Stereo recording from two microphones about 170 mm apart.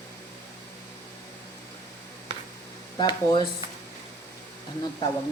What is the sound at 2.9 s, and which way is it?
Speech, 25° left (ahead or behind).